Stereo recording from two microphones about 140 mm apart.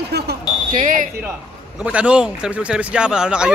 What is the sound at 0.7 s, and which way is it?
Speech, 70° right (ahead or behind).